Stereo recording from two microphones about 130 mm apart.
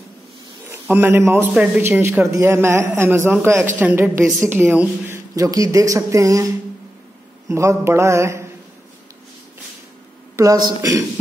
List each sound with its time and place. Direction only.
0.7 s a man's voice: 20° right (ahead or behind)
10.3 s speech: 25° right (ahead or behind)